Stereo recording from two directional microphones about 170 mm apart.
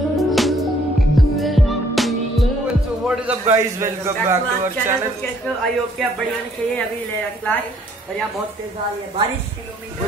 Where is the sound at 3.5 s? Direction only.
15° right (ahead or behind).